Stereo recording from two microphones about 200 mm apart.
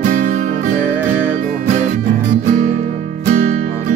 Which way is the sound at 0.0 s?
40° right (ahead or behind).